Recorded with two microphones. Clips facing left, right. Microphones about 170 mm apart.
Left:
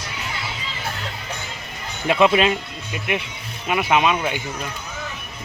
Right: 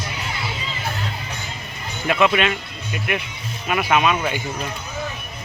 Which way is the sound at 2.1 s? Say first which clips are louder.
Left 2 dB; 30° left (ahead or behind).